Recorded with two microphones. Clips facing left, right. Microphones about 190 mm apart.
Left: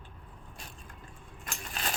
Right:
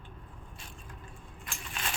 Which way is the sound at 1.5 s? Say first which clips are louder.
Left 2 dB; 40° left (ahead or behind).